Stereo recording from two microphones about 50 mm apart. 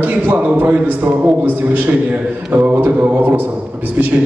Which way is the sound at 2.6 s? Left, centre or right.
Right.